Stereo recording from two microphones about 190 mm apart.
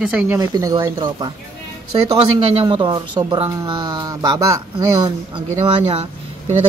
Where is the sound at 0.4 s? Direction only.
20° right (ahead or behind).